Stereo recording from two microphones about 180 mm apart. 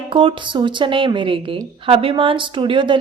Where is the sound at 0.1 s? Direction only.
30° right (ahead or behind).